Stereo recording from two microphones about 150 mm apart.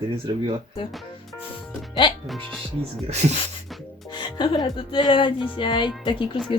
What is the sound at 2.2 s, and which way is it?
Speech, centre (ahead or behind).